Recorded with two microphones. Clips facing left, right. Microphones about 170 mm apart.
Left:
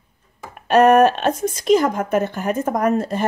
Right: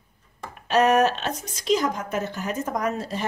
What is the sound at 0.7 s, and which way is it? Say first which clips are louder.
Speech: left 7 dB; 55° left (ahead or behind).